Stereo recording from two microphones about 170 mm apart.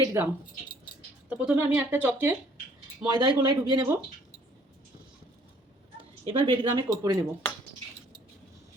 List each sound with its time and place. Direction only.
0.0 s speech: 15° right (ahead or behind)
1.3 s speech: 10° right (ahead or behind)
3.0 s speech: 25° right (ahead or behind)
6.0 s a woman's voice: 30° right (ahead or behind)
6.8 s speech: 20° right (ahead or behind)